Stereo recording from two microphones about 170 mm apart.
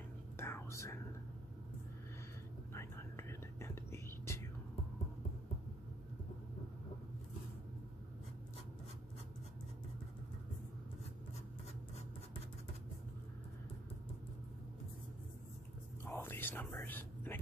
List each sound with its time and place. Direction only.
0.4 s whispering: 15° left (ahead or behind)
2.7 s whispering: 15° left (ahead or behind)
16.1 s whispering: 15° left (ahead or behind)